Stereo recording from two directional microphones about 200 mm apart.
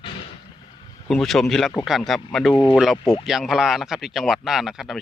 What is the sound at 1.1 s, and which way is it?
Speech, centre (ahead or behind).